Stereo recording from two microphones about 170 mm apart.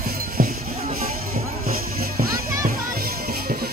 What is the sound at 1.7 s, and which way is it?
Music, 60° right (ahead or behind).